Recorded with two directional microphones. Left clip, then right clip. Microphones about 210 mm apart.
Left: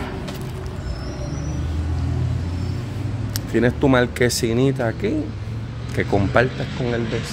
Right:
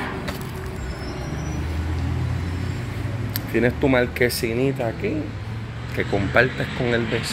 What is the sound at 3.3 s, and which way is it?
Speech, 15° left (ahead or behind).